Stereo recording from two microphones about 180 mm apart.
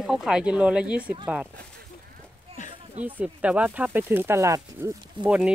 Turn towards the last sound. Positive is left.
turn(degrees=-5)  # may be behind; listen again after turning